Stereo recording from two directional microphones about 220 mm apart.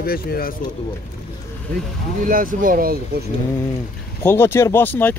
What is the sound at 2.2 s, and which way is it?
Speech, 40° right (ahead or behind).